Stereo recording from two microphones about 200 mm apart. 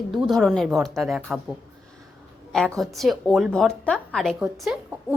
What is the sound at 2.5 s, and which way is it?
A woman's voice, centre (ahead or behind).